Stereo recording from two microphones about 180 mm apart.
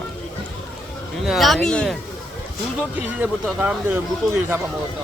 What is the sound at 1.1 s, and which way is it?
Speech, centre (ahead or behind).